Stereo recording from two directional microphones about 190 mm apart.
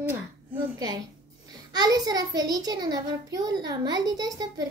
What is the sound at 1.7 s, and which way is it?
A child's voice, 20° right (ahead or behind).